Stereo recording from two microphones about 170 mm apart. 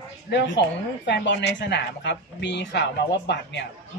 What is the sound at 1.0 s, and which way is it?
A woman's voice, 90° left.